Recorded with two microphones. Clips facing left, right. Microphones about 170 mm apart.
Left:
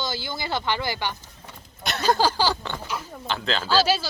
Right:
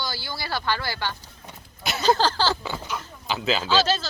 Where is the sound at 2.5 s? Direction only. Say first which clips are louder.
Right 1 dB; 5° right (ahead or behind).